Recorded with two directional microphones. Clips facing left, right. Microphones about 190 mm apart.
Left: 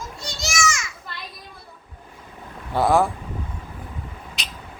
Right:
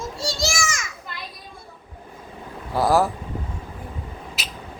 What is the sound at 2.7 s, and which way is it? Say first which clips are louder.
Speech: even; centre (ahead or behind).